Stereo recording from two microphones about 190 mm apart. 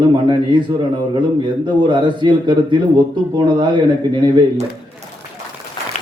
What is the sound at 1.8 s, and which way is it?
Speech, 25° right (ahead or behind).